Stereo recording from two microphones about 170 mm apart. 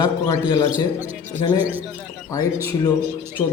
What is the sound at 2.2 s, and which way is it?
Speech, 20° left (ahead or behind).